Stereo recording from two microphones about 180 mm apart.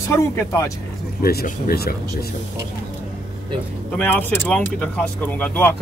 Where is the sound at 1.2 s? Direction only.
55° left (ahead or behind).